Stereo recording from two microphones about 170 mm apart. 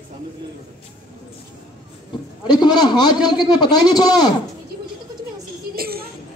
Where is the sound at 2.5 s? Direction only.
25° left (ahead or behind).